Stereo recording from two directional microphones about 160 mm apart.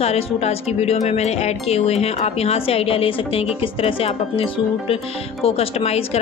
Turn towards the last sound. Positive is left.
turn(degrees=40)  # may be behind; listen again after turning